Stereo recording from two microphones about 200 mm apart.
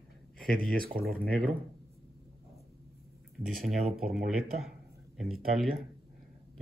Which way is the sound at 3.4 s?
Centre (ahead or behind).